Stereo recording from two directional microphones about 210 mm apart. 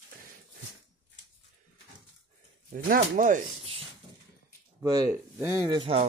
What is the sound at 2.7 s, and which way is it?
Speech, 40° right (ahead or behind).